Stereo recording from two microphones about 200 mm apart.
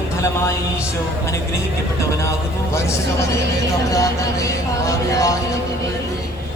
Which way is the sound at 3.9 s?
15° left (ahead or behind).